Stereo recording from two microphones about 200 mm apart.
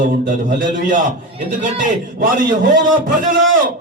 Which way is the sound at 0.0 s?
40° right (ahead or behind).